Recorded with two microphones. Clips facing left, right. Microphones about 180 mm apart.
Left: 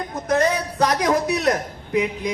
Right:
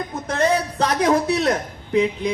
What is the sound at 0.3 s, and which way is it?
A man's voice, 30° right (ahead or behind).